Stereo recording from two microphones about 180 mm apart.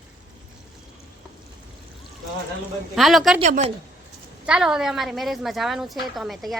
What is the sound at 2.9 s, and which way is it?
Speech, centre (ahead or behind).